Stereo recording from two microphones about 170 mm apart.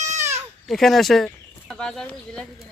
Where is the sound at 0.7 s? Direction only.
Centre (ahead or behind).